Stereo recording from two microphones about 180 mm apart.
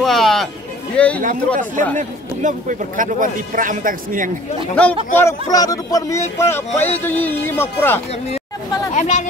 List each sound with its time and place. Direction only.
0.0 s speech: centre (ahead or behind)
1.2 s a man's voice: 50° right (ahead or behind)
5.1 s speech: 15° left (ahead or behind)
8.9 s speech: 40° left (ahead or behind)